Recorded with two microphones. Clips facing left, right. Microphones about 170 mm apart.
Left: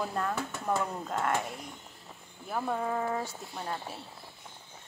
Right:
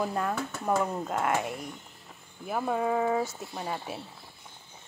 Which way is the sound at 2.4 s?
10° right (ahead or behind).